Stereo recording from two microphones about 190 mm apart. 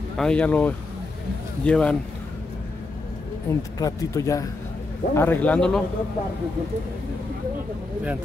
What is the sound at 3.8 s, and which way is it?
Speech, 20° left (ahead or behind).